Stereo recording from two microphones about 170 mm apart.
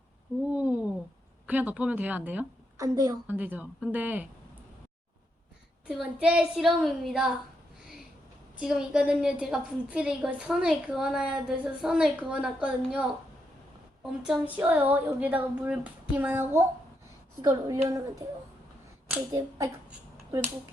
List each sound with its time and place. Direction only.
0.5 s a sound: 10° right (ahead or behind)
1.5 s a woman's voice: 10° right (ahead or behind)
2.8 s speech: 20° right (ahead or behind)
3.3 s a sound: 10° right (ahead or behind)
5.9 s a woman's voice: 5° right (ahead or behind)
8.5 s a woman's voice: 5° right (ahead or behind)
14.3 s a sound: 10° right (ahead or behind)
17.4 s speech: 20° right (ahead or behind)
19.3 s speech: 20° right (ahead or behind)